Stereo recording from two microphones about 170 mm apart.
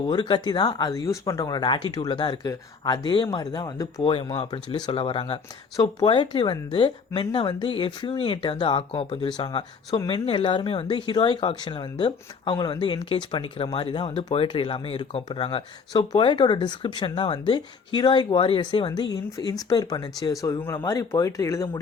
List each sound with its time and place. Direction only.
0.0 s speech: 25° left (ahead or behind)